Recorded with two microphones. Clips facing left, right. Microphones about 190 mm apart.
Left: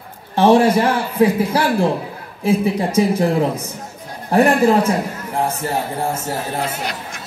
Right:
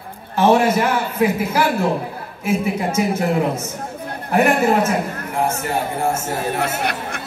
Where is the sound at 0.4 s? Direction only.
30° left (ahead or behind).